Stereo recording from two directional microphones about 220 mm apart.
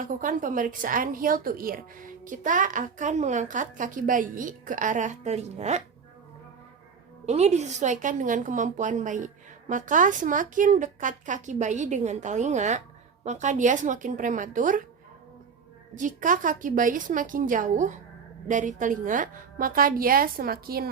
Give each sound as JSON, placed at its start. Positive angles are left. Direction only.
{"t": 0.0, "sound": "a woman's voice", "side_deg": -35}
{"t": 7.3, "sound": "a woman's voice", "side_deg": -30}
{"t": 16.0, "sound": "a woman's voice", "side_deg": -35}